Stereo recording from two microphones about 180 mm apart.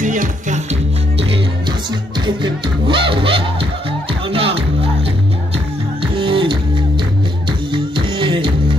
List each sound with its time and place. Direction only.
0.0 s music: 45° right (ahead or behind)
2.2 s music: 25° right (ahead or behind)
6.1 s music: 30° right (ahead or behind)
7.7 s music: 30° right (ahead or behind)